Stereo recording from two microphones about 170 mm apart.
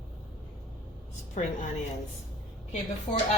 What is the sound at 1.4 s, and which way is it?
Speech, 45° left (ahead or behind).